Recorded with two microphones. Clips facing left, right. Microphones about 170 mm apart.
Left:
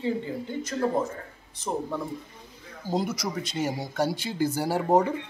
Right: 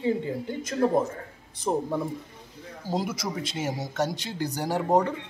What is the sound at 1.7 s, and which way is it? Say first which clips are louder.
Speech: right 4 dB; 25° right (ahead or behind).